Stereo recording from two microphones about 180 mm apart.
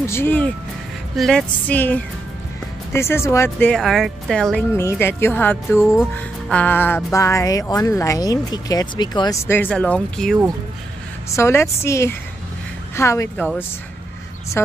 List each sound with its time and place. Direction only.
0.0 s speech: 15° left (ahead or behind)
4.6 s speech: 15° left (ahead or behind)
11.2 s speech: 15° left (ahead or behind)